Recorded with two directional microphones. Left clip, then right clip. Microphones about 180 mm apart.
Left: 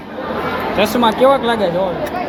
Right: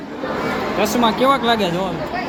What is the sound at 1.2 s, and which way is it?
Speech, 30° right (ahead or behind).